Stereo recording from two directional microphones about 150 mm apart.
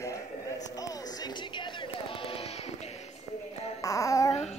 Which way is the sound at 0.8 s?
25° left (ahead or behind).